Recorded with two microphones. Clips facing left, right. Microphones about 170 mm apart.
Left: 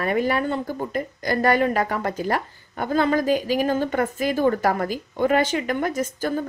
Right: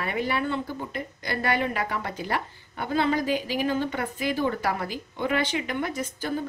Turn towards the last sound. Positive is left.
turn(degrees=45)  # may be behind; listen again after turning